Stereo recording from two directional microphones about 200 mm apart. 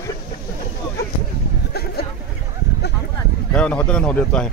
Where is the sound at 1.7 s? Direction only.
55° left (ahead or behind).